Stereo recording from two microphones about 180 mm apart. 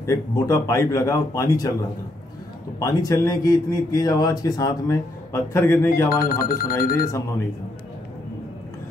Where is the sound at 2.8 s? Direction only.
20° left (ahead or behind).